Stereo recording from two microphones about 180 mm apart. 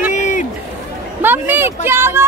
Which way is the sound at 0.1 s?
45° left (ahead or behind).